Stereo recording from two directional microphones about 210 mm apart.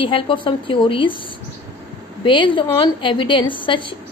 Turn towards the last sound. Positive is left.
turn(degrees=25)  # may be behind; listen again after turning